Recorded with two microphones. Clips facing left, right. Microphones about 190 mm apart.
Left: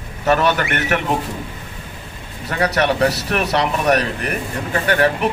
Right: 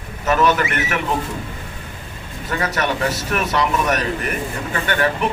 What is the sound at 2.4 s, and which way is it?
A man's voice, 35° left (ahead or behind).